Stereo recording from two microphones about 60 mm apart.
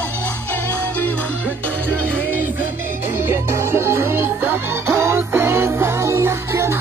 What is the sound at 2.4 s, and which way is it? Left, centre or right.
Music, right.